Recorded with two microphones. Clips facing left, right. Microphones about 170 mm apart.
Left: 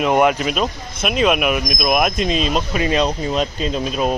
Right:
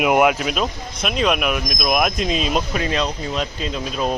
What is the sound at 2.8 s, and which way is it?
Speech, 20° left (ahead or behind).